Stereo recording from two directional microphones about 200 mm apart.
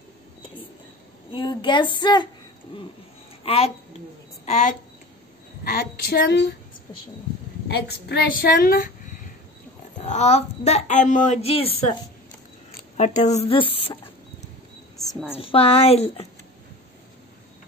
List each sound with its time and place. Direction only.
1.3 s a woman's voice: 25° left (ahead or behind)
3.4 s a woman's voice: 30° left (ahead or behind); by 6.4 s 55° left (ahead or behind)
7.6 s a woman's voice: 55° left (ahead or behind)
10.0 s a woman's voice: 35° left (ahead or behind)
15.3 s a woman's voice: 30° left (ahead or behind)